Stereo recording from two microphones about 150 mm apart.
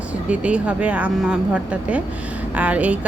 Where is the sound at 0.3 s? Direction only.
10° right (ahead or behind).